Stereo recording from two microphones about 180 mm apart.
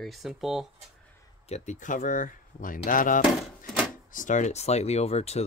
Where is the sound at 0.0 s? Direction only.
Centre (ahead or behind).